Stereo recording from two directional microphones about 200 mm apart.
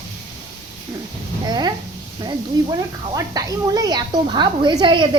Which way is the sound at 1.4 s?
20° right (ahead or behind).